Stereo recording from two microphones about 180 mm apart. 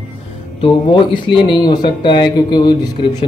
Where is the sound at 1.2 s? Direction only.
25° left (ahead or behind).